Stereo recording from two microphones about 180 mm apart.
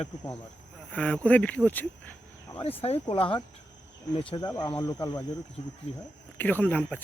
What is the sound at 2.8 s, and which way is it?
Speech, 30° left (ahead or behind).